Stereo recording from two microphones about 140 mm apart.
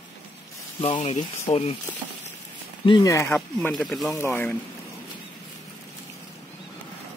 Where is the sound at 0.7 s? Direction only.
35° left (ahead or behind).